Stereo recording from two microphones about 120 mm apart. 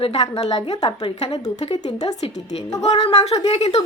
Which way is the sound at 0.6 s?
40° left (ahead or behind).